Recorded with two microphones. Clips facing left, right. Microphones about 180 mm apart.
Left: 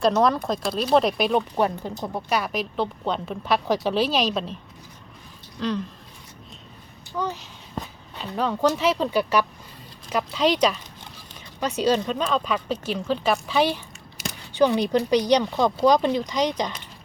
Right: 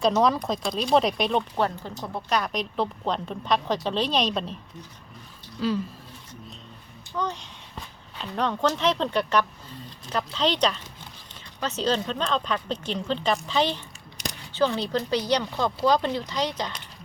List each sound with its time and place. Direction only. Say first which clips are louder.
0.0 s a woman's voice: left 2 dB; centre (ahead or behind)
5.5 s speech: right 1 dB; 5° right (ahead or behind)
7.2 s speech: left 1 dB; 5° left (ahead or behind)